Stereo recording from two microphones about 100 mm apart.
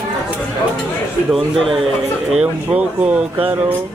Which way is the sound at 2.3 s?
10° right (ahead or behind).